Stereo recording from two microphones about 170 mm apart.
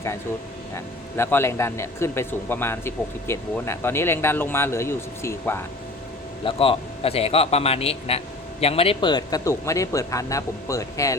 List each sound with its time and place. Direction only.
0.7 s speech: 15° left (ahead or behind)
6.4 s a man's voice: 30° left (ahead or behind)